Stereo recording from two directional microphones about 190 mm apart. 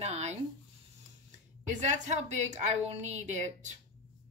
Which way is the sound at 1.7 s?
40° right (ahead or behind).